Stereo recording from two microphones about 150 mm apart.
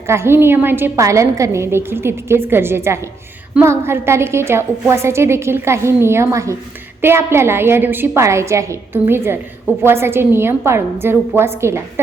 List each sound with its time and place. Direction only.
0.1 s a woman's voice: 15° right (ahead or behind)